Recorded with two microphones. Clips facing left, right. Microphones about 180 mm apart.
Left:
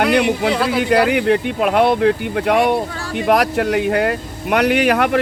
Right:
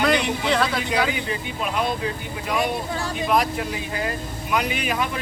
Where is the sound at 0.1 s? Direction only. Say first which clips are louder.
Left 7 dB; 65° left (ahead or behind).